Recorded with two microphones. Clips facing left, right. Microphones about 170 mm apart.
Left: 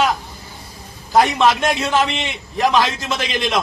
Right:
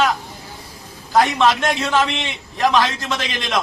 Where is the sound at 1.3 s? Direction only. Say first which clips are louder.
Left 1 dB; 10° left (ahead or behind).